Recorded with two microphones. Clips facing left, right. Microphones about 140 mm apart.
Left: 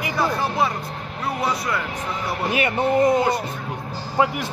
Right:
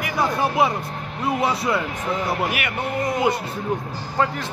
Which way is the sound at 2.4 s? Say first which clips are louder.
Left 5 dB; 25° left (ahead or behind).